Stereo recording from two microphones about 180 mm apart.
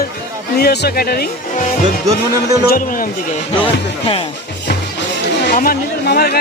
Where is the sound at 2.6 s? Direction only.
50° left (ahead or behind).